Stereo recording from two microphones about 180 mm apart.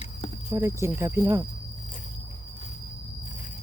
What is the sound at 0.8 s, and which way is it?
Speech, 15° right (ahead or behind).